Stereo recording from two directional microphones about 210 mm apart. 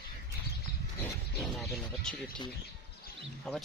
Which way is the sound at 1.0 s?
Centre (ahead or behind).